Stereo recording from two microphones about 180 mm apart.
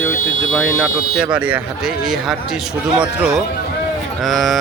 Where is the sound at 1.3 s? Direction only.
5° right (ahead or behind).